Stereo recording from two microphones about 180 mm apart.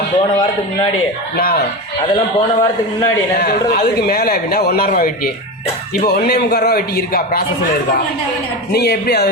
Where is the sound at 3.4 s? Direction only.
55° left (ahead or behind).